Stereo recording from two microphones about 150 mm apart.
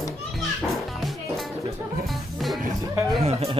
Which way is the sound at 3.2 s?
40° right (ahead or behind).